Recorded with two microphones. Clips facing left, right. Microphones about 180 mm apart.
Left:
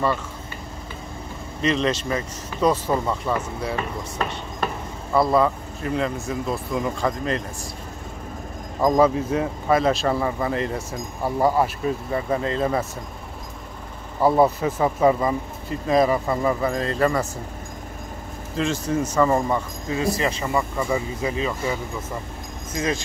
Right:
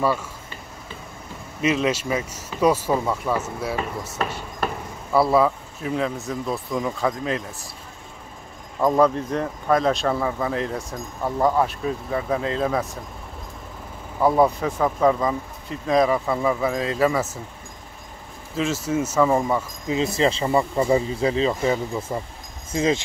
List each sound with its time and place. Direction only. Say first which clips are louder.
1.6 s speech: right 1 dB; 10° right (ahead or behind)
8.8 s speech: left 1 dB; 5° left (ahead or behind)
14.2 s speech: left 1 dB; 5° left (ahead or behind)
18.6 s speech: even; 5° right (ahead or behind)
20.2 s speech: right 4 dB; 30° right (ahead or behind)